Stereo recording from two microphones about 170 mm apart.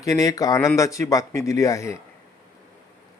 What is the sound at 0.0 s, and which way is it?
Speech, 20° left (ahead or behind).